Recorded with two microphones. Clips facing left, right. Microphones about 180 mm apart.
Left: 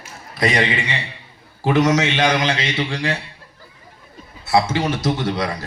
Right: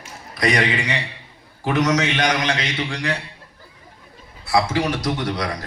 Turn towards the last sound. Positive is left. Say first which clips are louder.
# left 2 dB
turn(degrees=25)  # may be behind; listen again after turning